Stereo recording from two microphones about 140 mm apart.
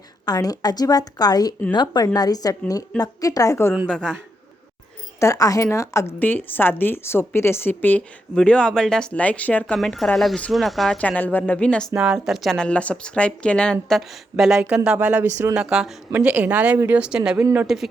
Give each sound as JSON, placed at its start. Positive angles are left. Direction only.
{"t": 0.3, "sound": "a woman's voice", "side_deg": 25}
{"t": 3.9, "sound": "speech", "side_deg": 5}
{"t": 5.2, "sound": "a woman's voice", "side_deg": 25}
{"t": 11.9, "sound": "speech", "side_deg": -5}